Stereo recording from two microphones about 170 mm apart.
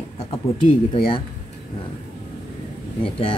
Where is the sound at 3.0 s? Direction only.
30° left (ahead or behind).